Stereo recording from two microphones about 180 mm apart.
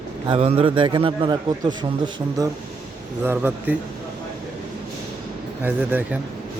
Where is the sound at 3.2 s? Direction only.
10° right (ahead or behind).